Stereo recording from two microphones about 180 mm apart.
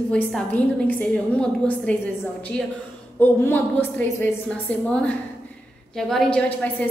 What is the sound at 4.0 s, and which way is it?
A woman's voice, 10° left (ahead or behind).